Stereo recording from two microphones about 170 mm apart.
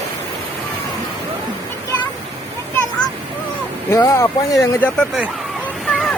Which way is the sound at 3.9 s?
20° left (ahead or behind).